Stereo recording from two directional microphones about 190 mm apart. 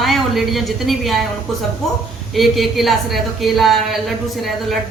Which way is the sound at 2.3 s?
Centre (ahead or behind).